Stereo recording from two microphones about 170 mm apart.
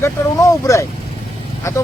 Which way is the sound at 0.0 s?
20° left (ahead or behind).